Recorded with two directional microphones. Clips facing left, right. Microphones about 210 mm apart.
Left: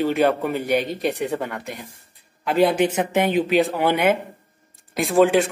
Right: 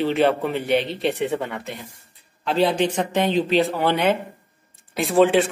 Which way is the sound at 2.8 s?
10° left (ahead or behind).